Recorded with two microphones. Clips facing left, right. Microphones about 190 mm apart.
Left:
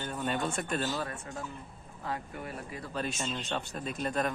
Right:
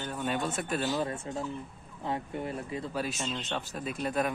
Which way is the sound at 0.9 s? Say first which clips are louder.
Right 4 dB; 25° right (ahead or behind).